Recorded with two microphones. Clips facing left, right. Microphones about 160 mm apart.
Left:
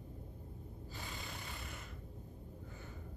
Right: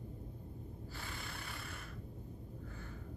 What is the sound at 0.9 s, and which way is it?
Snort, 15° left (ahead or behind).